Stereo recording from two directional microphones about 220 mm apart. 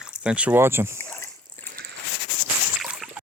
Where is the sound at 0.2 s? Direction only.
5° right (ahead or behind).